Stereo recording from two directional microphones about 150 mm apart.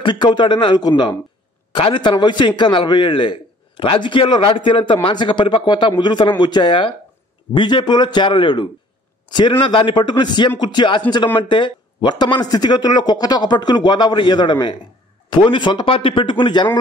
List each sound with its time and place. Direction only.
0.0 s a man's voice: 30° left (ahead or behind)